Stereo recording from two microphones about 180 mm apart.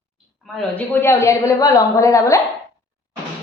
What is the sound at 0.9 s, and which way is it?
A woman's voice, 15° left (ahead or behind).